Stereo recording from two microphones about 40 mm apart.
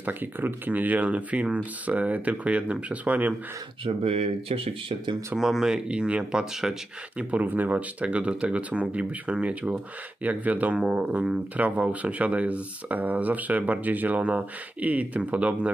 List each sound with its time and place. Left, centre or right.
0.0 s speech: right
0.7 s speech: right
5.4 s speech: centre
5.7 s speech: right
6.3 s speech: centre
7.2 s speech: right
7.4 s speech: right
8.0 s speech: right
10.8 s speech: right